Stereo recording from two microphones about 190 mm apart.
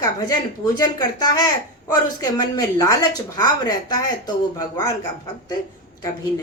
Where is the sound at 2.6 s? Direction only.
20° left (ahead or behind).